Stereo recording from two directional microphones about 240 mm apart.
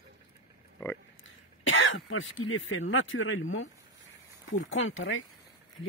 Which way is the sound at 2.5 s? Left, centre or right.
Left.